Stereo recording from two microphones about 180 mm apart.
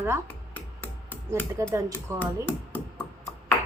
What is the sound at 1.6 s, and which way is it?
Speech, 15° right (ahead or behind).